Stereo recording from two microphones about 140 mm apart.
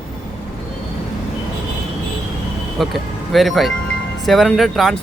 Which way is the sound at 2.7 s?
Centre (ahead or behind).